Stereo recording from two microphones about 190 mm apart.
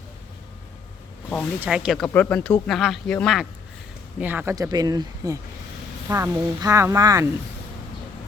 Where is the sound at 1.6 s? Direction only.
5° right (ahead or behind).